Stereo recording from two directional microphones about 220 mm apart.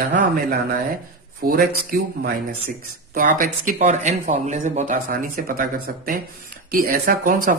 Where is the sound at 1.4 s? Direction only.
40° right (ahead or behind).